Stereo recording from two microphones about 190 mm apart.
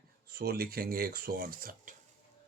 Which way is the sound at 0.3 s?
55° right (ahead or behind).